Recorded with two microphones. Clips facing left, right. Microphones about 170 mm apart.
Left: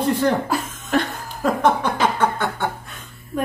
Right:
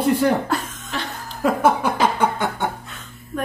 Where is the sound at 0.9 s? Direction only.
50° left (ahead or behind).